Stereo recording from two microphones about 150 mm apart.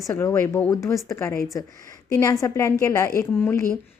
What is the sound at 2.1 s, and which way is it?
A woman's voice, 20° left (ahead or behind).